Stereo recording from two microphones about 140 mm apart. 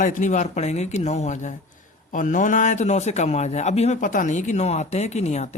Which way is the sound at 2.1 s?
70° left (ahead or behind).